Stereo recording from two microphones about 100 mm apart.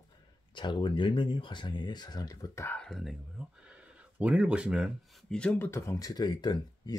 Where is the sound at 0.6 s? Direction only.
50° left (ahead or behind).